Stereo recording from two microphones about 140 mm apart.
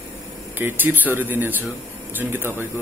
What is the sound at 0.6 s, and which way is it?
Speech, 15° right (ahead or behind).